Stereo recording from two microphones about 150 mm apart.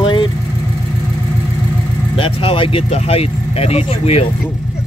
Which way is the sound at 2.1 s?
35° left (ahead or behind).